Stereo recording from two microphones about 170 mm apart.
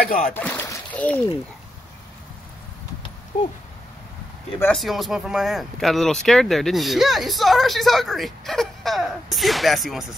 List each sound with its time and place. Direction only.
0.0 s speech: 50° left (ahead or behind)
0.3 s splash: 10° left (ahead or behind)
3.3 s speech: 50° left (ahead or behind)
4.7 s speech: centre (ahead or behind)